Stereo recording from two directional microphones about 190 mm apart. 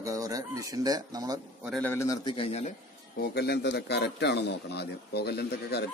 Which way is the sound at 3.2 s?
60° left (ahead or behind).